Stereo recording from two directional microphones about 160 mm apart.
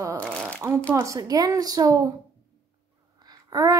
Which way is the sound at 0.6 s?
15° right (ahead or behind).